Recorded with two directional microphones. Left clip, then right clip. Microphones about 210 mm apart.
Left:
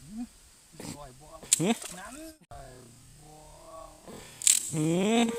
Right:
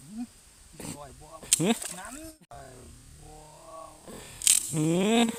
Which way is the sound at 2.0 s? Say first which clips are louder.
Right 1 dB; 15° left (ahead or behind).